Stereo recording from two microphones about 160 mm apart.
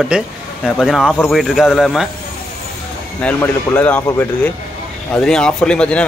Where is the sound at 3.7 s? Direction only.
10° left (ahead or behind).